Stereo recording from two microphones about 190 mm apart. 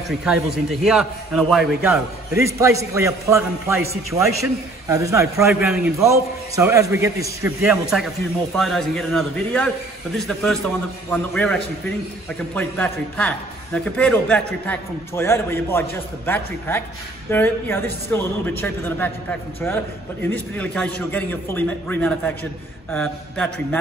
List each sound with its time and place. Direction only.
0.2 s a man's voice: 5° right (ahead or behind)
2.3 s a man's voice: 15° right (ahead or behind)
7.9 s a man's voice: centre (ahead or behind)